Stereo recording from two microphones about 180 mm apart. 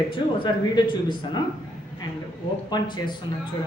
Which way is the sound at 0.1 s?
25° left (ahead or behind).